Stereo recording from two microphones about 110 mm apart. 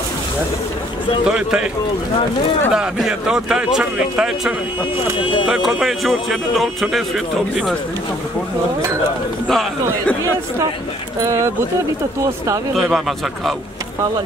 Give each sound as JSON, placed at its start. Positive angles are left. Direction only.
{"t": 1.2, "sound": "speech", "side_deg": -5}
{"t": 2.7, "sound": "speech", "side_deg": -5}
{"t": 9.5, "sound": "speech", "side_deg": 5}
{"t": 11.1, "sound": "speech", "side_deg": -30}
{"t": 12.7, "sound": "speech", "side_deg": 0}